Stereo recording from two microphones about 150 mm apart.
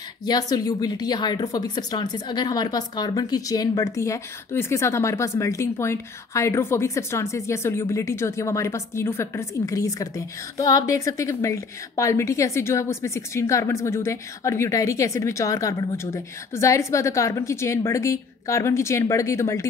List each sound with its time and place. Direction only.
0.2 s a woman's voice: 25° left (ahead or behind)